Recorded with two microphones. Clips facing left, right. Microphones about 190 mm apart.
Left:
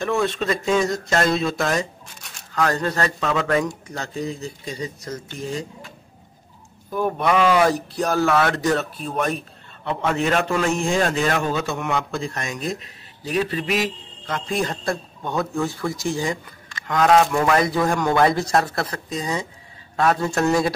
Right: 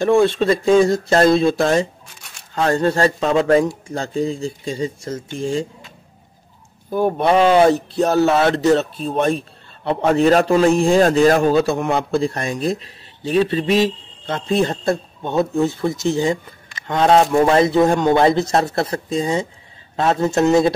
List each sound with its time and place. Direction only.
0.0 s a man's voice: 30° right (ahead or behind)
6.9 s a man's voice: 30° right (ahead or behind)